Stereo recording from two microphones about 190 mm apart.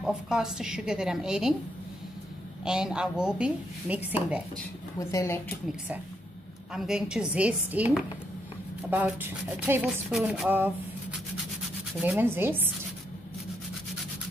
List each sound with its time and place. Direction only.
0.0 s a woman's voice: 5° right (ahead or behind)
2.6 s a woman's voice: 5° right (ahead or behind)
4.9 s speech: 15° left (ahead or behind)
6.7 s a woman's voice: 5° right (ahead or behind)